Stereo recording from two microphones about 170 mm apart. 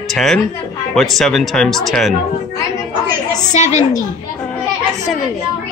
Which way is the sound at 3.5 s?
45° left (ahead or behind).